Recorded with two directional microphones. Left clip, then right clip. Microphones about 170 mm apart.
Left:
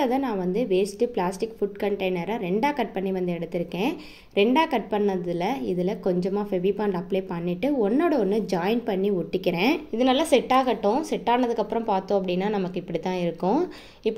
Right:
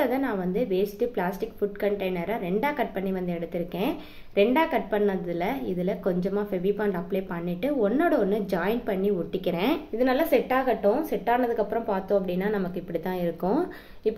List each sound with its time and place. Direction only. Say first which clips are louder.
0.0 s a woman's voice: left 1 dB; 35° left (ahead or behind)